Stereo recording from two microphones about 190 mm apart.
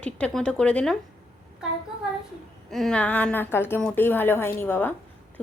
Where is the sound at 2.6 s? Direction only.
Centre (ahead or behind).